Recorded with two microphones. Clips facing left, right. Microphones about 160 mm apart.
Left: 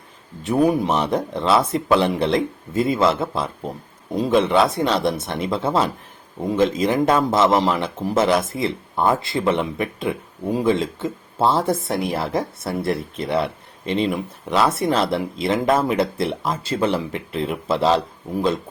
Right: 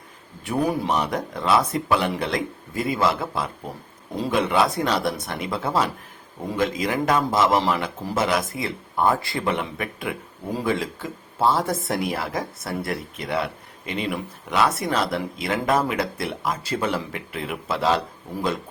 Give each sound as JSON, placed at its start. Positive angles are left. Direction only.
{"t": 0.4, "sound": "a man's voice", "side_deg": 20}